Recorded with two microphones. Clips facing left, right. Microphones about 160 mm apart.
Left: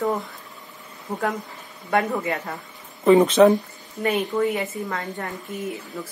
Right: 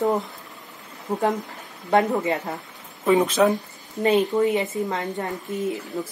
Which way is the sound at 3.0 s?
5° right (ahead or behind).